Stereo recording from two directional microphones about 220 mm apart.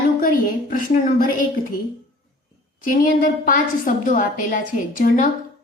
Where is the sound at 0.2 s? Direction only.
40° left (ahead or behind).